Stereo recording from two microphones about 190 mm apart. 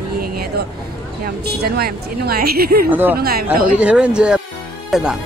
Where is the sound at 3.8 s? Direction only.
5° right (ahead or behind).